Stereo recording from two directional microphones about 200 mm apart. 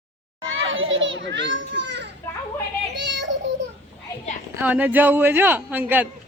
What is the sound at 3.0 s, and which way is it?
Child singing, 60° right (ahead or behind).